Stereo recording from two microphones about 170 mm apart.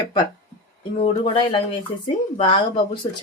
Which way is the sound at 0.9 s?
30° left (ahead or behind).